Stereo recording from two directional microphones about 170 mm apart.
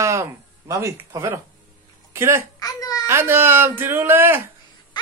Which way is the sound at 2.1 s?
15° right (ahead or behind).